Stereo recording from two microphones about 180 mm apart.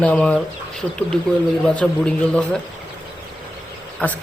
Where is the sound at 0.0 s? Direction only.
5° left (ahead or behind).